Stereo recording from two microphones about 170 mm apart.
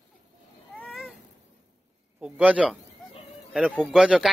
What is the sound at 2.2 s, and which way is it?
A man's voice, 5° right (ahead or behind).